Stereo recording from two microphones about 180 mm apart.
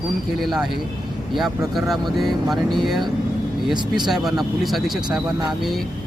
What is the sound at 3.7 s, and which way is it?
Speech, 25° right (ahead or behind).